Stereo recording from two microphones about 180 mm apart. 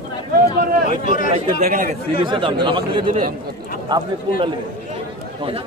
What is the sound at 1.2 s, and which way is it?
Speech, 45° right (ahead or behind).